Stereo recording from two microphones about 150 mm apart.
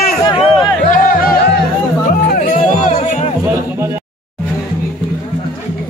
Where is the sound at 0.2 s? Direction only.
35° left (ahead or behind).